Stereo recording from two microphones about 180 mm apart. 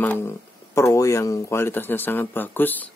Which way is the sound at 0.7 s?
20° left (ahead or behind).